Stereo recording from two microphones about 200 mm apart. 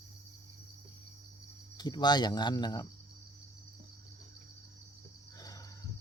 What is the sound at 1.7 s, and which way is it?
Speech, 20° left (ahead or behind).